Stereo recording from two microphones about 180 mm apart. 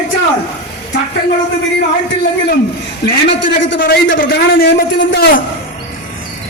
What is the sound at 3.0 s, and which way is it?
Speech, 90° left.